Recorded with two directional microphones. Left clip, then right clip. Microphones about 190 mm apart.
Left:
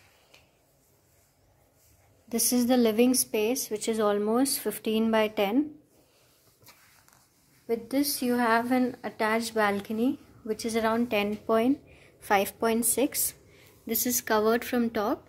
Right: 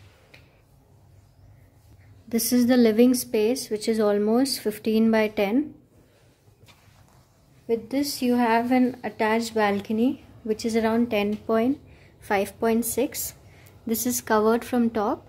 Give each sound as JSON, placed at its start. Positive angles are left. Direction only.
{"t": 2.2, "sound": "a woman's voice", "side_deg": -15}
{"t": 7.6, "sound": "a woman's voice", "side_deg": -5}
{"t": 13.8, "sound": "a woman's voice", "side_deg": -15}